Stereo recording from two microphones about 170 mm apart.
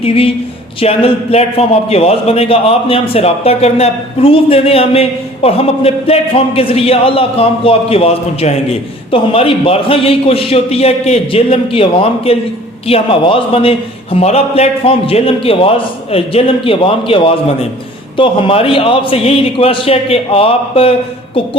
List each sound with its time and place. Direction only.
0.0 s a man's voice: 35° left (ahead or behind)